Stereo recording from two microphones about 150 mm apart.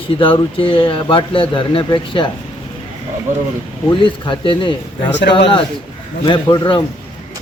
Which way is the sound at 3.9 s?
35° left (ahead or behind).